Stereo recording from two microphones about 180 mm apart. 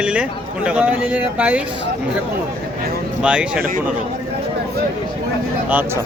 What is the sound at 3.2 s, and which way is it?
Speech, 5° right (ahead or behind).